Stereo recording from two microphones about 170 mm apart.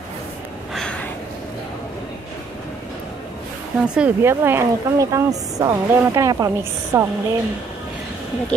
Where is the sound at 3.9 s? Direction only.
10° right (ahead or behind).